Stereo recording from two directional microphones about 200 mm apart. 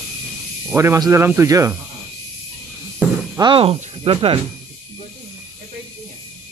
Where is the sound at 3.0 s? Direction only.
5° right (ahead or behind).